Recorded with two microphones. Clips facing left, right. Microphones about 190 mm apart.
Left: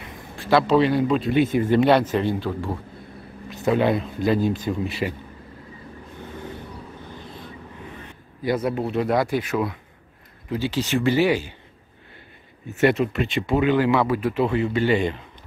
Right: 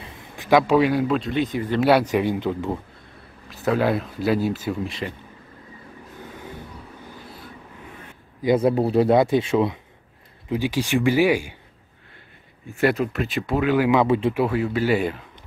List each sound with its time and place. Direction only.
0.4 s speech: 15° right (ahead or behind)
3.4 s speech: centre (ahead or behind)
4.8 s a man's voice: 5° left (ahead or behind)
8.5 s speech: 30° right (ahead or behind)
10.5 s speech: 15° right (ahead or behind)
12.7 s speech: centre (ahead or behind)
13.8 s speech: 20° right (ahead or behind)
14.3 s speech: 5° right (ahead or behind)